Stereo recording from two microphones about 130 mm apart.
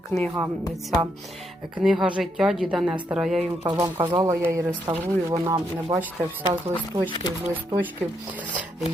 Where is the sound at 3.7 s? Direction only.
30° right (ahead or behind).